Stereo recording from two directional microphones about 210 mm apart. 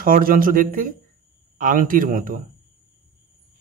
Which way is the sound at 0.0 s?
40° right (ahead or behind).